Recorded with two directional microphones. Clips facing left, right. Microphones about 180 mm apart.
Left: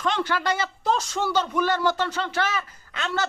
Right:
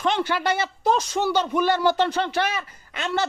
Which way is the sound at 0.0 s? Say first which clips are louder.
Right 2 dB; 20° right (ahead or behind).